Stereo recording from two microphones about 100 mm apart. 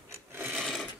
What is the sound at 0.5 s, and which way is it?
Sewing machine, centre (ahead or behind).